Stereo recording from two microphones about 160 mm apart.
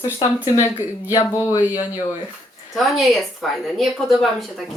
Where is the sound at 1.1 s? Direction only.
20° left (ahead or behind).